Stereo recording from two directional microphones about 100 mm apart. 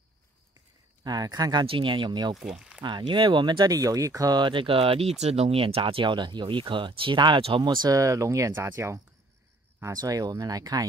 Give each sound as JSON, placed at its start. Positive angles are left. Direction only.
{"t": 1.0, "sound": "speech", "side_deg": -40}
{"t": 1.7, "sound": "speech", "side_deg": -55}
{"t": 2.3, "sound": "speech", "side_deg": -5}
{"t": 2.8, "sound": "speech", "side_deg": -50}